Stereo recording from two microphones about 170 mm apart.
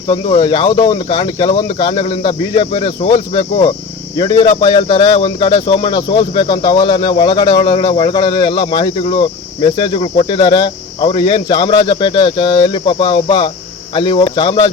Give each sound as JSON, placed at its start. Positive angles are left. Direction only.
{"t": 0.1, "sound": "speech", "side_deg": 30}